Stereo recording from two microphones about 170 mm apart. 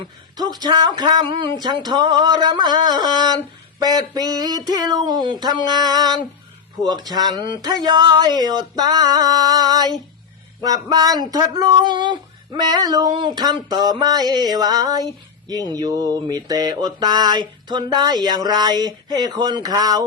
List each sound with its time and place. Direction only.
0.0 s mantra: 25° right (ahead or behind)